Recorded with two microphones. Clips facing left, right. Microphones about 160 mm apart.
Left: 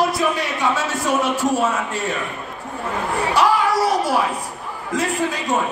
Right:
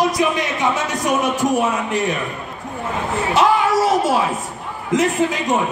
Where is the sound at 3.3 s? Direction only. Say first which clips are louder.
Right 2 dB; 20° right (ahead or behind).